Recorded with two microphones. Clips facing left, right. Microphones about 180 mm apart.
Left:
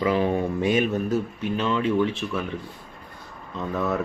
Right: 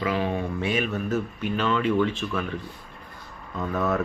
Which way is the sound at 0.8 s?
20° left (ahead or behind).